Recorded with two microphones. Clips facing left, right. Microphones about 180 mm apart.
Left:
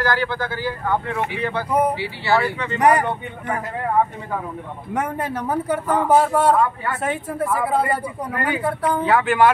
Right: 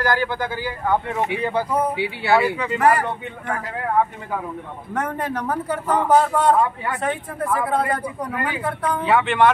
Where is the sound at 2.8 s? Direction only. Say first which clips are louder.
Left 2 dB; 20° left (ahead or behind).